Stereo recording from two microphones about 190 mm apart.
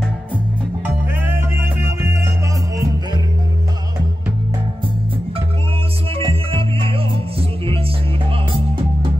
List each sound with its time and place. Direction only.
0.8 s music: 10° right (ahead or behind)
6.1 s music: 30° right (ahead or behind)